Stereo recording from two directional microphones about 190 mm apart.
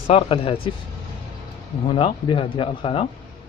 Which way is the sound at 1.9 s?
25° left (ahead or behind).